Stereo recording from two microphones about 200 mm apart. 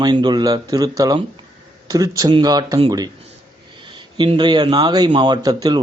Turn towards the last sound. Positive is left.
turn(degrees=-20)  # may be behind; listen again after turning